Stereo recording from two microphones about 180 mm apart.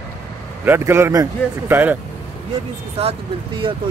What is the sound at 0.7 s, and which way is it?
A man's voice, 15° right (ahead or behind).